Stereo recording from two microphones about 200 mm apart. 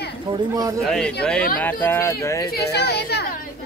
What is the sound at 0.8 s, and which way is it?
Speech, 5° left (ahead or behind).